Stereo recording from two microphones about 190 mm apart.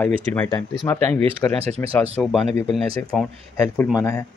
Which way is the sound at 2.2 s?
5° left (ahead or behind).